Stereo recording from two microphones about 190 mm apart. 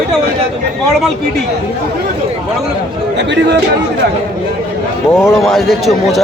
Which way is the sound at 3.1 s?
65° right (ahead or behind).